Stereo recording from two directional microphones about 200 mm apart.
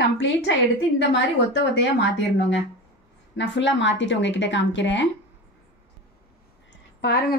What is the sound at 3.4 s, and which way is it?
Speech, 65° left (ahead or behind).